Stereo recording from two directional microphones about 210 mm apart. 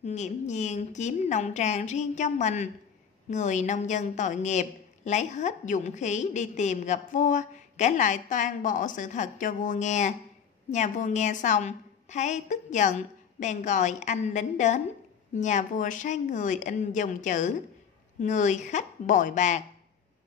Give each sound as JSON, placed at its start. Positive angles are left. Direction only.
{"t": 0.0, "sound": "a woman's voice", "side_deg": 35}